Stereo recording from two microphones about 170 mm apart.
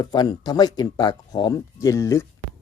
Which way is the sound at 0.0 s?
25° left (ahead or behind).